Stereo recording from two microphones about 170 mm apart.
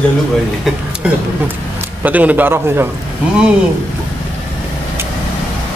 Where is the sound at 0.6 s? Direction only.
5° right (ahead or behind).